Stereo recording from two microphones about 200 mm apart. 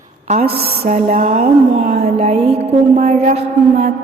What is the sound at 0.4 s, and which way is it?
Mantra, 40° right (ahead or behind).